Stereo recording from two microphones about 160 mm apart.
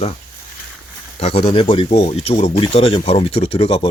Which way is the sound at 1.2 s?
35° left (ahead or behind).